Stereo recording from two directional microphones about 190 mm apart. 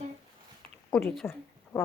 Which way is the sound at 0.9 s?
10° left (ahead or behind).